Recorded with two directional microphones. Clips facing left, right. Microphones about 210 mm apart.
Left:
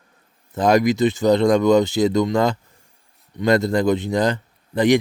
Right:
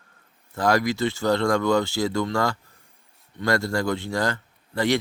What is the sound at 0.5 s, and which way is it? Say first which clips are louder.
Speech: left 6 dB; 20° left (ahead or behind).